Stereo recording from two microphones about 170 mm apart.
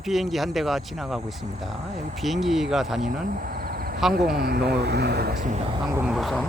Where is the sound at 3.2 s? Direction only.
55° right (ahead or behind).